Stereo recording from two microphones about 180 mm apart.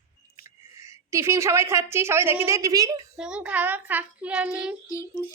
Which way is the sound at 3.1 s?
5° right (ahead or behind).